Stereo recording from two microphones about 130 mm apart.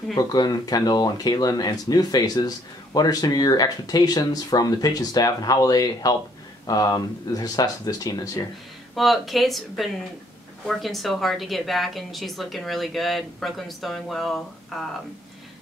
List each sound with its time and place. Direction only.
0.1 s speech: 30° left (ahead or behind)
8.9 s a woman's voice: centre (ahead or behind)